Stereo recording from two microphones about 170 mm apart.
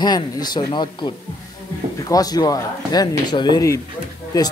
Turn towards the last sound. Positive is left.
turn(degrees=25)  # may be behind; listen again after turning